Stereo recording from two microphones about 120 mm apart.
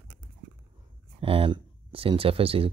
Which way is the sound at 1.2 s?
45° right (ahead or behind).